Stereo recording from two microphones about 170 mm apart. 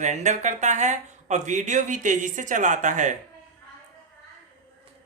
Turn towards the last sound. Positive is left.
turn(degrees=-45)  # may be behind; listen again after turning